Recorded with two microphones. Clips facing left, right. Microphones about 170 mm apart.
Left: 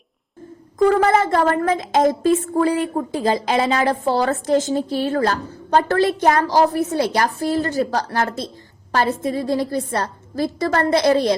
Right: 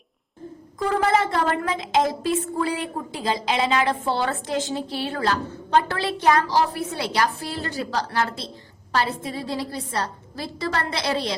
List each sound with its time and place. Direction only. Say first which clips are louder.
0.8 s a woman's voice: left 6 dB; 45° left (ahead or behind)